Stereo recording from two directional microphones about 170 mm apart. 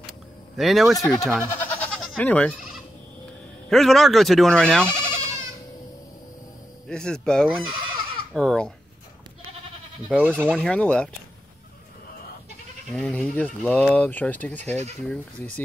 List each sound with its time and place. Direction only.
0.6 s speech: centre (ahead or behind)
1.1 s goat: centre (ahead or behind)
3.6 s speech: centre (ahead or behind)
6.9 s speech: 5° left (ahead or behind)
7.4 s goat: 30° right (ahead or behind)
8.3 s speech: 5° left (ahead or behind)
10.0 s speech: 5° right (ahead or behind)
10.5 s speech: 5° left (ahead or behind)
12.9 s speech: 5° left (ahead or behind)